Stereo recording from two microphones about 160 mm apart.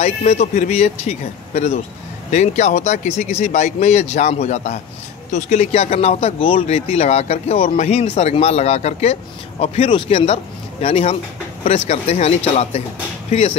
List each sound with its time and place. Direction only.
0.0 s speech: 40° left (ahead or behind)